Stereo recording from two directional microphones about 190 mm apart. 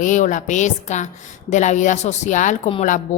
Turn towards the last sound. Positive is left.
turn(degrees=40)  # may be behind; listen again after turning